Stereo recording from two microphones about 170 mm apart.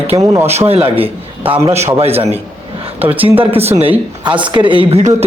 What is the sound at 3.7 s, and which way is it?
Speech, 40° right (ahead or behind).